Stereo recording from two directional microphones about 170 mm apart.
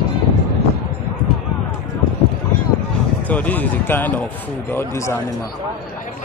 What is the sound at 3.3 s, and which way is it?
A man's voice, 10° left (ahead or behind).